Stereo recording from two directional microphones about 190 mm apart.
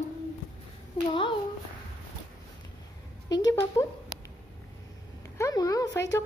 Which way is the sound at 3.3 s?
20° left (ahead or behind).